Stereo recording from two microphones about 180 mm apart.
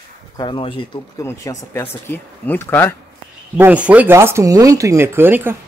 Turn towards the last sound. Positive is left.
turn(degrees=-10)  # may be behind; listen again after turning